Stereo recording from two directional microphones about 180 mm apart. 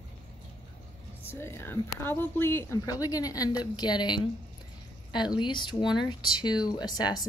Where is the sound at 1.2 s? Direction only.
10° left (ahead or behind).